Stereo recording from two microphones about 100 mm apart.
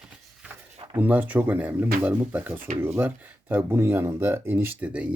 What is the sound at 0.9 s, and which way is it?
Speech, 15° right (ahead or behind).